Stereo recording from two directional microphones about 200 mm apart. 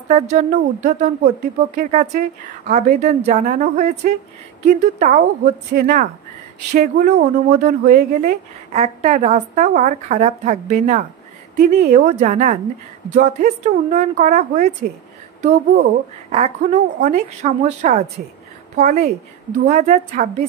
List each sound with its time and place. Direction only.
0.1 s a woman's voice: 35° right (ahead or behind)
8.7 s a woman's voice: 35° right (ahead or behind)
11.5 s speech: 50° right (ahead or behind)
12.1 s a woman's voice: 35° right (ahead or behind)
16.3 s a woman's voice: 35° right (ahead or behind)
19.7 s a woman's voice: 35° right (ahead or behind)